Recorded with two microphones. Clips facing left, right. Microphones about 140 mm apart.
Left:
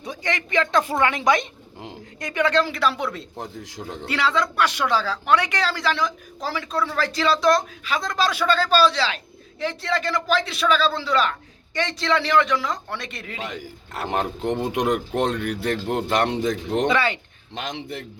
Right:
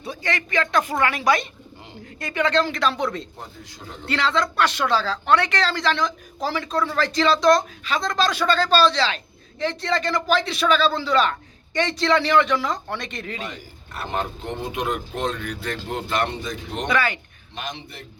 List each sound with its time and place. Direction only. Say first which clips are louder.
0.0 s a woman's voice: even; 20° left (ahead or behind); by 13.4 s 5° left (ahead or behind)
13.4 s speech: left 2 dB; 90° left
16.8 s a woman's voice: even; 25° left (ahead or behind)